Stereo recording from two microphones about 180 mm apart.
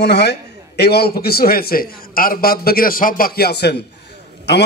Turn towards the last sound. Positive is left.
turn(degrees=70)  # may be behind; listen again after turning